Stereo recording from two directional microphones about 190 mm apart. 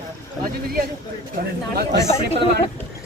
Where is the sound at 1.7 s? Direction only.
60° right (ahead or behind).